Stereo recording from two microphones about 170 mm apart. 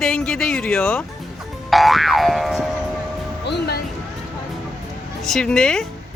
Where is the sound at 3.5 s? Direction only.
80° left.